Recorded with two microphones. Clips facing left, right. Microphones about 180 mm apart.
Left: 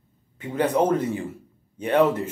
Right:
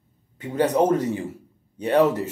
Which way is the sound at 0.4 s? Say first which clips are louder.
Right 2 dB; 40° right (ahead or behind).